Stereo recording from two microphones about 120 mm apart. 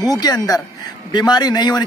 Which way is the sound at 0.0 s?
35° left (ahead or behind).